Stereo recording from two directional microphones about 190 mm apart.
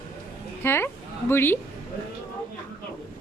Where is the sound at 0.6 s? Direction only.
10° left (ahead or behind).